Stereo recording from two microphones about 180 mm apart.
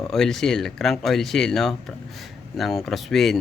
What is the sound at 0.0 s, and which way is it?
Speech, centre (ahead or behind).